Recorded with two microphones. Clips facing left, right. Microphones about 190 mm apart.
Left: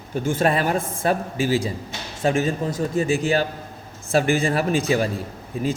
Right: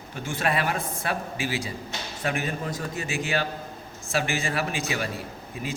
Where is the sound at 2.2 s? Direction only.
25° left (ahead or behind).